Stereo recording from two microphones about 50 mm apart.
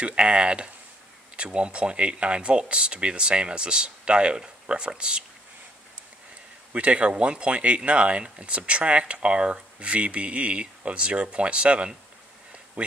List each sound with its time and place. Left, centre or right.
0.0 s speech: right
6.7 s speech: right